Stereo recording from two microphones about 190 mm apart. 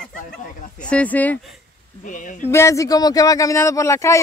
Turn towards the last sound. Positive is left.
turn(degrees=15)  # may be behind; listen again after turning